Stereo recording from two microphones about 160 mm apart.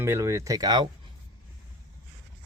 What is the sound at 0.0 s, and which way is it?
Speech, 15° right (ahead or behind).